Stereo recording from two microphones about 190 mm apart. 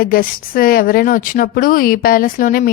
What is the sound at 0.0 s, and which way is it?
Speech, 50° left (ahead or behind).